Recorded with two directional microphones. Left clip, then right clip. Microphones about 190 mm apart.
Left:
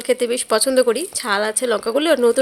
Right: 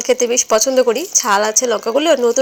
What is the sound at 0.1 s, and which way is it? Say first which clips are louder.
Speech: right 4 dB; 20° left (ahead or behind).